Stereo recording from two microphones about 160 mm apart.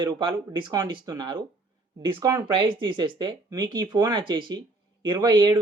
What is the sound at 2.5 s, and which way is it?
Speech, 30° right (ahead or behind).